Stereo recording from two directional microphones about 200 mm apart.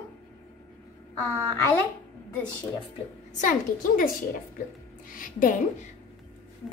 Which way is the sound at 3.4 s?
40° left (ahead or behind).